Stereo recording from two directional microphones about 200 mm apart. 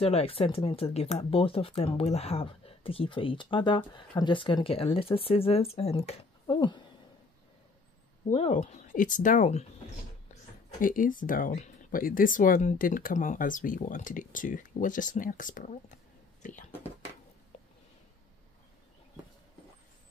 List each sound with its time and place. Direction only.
0.0 s speech: 30° left (ahead or behind)
8.3 s speech: 30° left (ahead or behind)
10.8 s speech: 40° left (ahead or behind)